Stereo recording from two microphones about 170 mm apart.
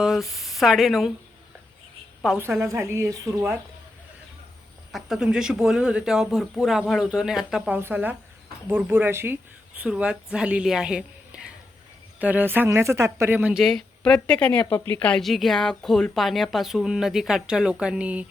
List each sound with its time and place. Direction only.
0.0 s speech: centre (ahead or behind)
2.3 s speech: centre (ahead or behind)
2.6 s speech: 15° right (ahead or behind)
4.9 s speech: centre (ahead or behind)